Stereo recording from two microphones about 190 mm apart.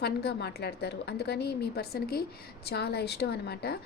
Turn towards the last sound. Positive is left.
turn(degrees=60)  # may be behind; listen again after turning